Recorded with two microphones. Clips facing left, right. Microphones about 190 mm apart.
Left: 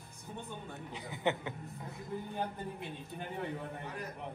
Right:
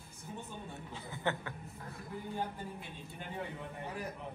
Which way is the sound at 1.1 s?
20° left (ahead or behind).